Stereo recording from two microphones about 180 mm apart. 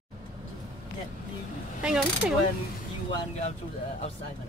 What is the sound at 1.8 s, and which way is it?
Speech, 5° right (ahead or behind).